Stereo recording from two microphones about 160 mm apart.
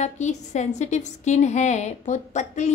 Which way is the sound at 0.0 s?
45° left (ahead or behind).